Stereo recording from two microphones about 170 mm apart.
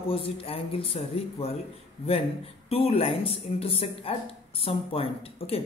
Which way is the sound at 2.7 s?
35° left (ahead or behind).